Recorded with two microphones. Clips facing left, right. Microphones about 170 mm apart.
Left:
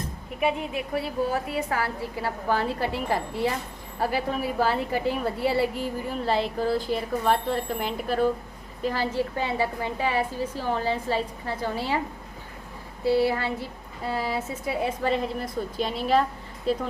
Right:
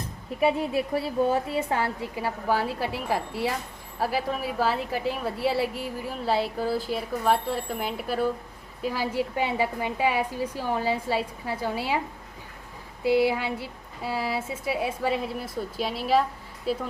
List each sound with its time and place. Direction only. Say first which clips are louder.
0.3 s a woman's voice: right 3 dB; 30° right (ahead or behind); by 11.9 s 10° right (ahead or behind)
13.0 s speech: even; 15° right (ahead or behind)